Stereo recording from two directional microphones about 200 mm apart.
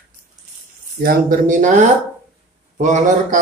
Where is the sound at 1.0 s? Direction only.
40° right (ahead or behind).